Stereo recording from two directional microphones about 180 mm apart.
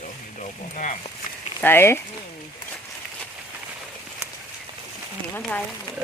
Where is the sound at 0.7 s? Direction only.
45° left (ahead or behind).